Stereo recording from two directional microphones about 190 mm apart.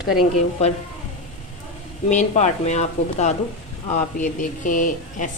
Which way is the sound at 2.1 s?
35° left (ahead or behind).